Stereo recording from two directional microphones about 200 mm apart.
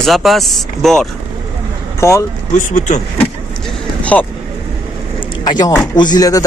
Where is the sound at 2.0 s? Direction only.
15° left (ahead or behind).